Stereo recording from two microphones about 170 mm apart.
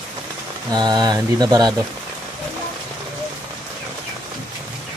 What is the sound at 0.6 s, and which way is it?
Speech, 25° right (ahead or behind).